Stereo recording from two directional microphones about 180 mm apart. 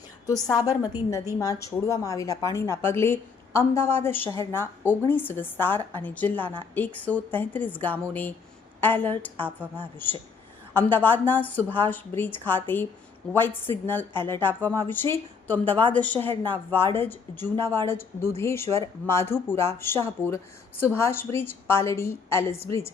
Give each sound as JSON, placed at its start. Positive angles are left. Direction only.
{"t": 0.6, "sound": "a woman's voice", "side_deg": 20}